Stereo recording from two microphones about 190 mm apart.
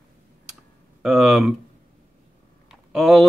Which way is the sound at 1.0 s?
5° right (ahead or behind).